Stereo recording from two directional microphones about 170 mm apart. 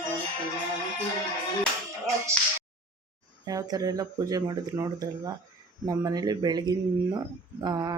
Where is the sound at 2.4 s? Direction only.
5° left (ahead or behind).